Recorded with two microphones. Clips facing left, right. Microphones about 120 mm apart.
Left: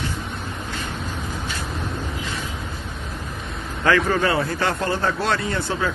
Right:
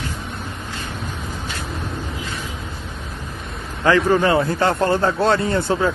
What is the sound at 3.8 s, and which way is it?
A man's voice, 20° right (ahead or behind).